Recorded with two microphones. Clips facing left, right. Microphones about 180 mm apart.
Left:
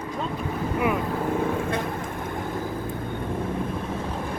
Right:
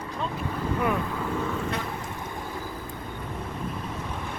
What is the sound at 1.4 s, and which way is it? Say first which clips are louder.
Vehicle: left 4 dB; 50° left (ahead or behind).